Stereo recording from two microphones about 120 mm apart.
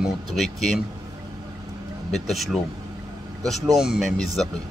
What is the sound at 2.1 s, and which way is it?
Speech, centre (ahead or behind).